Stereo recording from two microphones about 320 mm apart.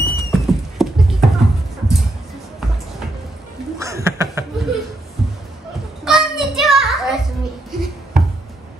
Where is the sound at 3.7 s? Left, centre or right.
Centre.